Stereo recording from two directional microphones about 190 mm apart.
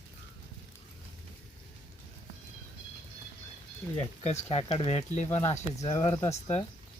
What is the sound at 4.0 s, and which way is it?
Speech, 35° left (ahead or behind).